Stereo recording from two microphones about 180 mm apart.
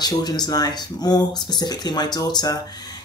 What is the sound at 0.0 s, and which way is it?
Speech, 20° left (ahead or behind).